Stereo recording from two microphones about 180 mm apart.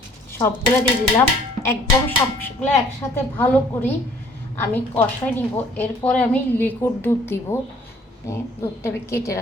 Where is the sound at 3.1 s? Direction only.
10° left (ahead or behind).